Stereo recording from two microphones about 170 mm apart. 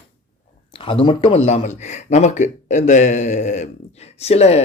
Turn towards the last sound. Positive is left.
turn(degrees=40)  # may be behind; listen again after turning